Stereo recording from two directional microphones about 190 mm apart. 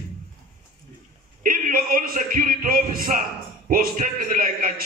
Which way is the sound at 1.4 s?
45° right (ahead or behind).